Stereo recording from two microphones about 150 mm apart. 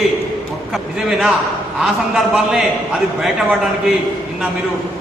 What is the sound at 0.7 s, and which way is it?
A man's voice, 5° right (ahead or behind).